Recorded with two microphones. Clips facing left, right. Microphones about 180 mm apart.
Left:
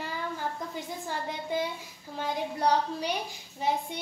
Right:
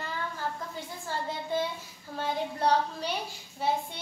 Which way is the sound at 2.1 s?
15° left (ahead or behind).